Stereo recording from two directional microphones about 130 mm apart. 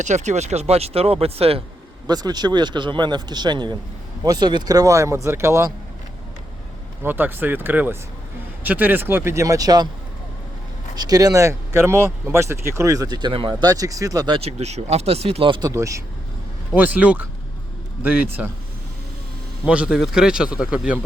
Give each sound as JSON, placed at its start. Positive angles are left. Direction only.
{"t": 0.0, "sound": "speech", "side_deg": -65}
{"t": 2.0, "sound": "speech", "side_deg": -30}
{"t": 7.0, "sound": "speech", "side_deg": -15}
{"t": 10.9, "sound": "speech", "side_deg": -30}
{"t": 14.3, "sound": "speech", "side_deg": -55}
{"t": 15.7, "sound": "speech", "side_deg": -25}
{"t": 16.7, "sound": "speech", "side_deg": -10}
{"t": 19.6, "sound": "speech", "side_deg": -10}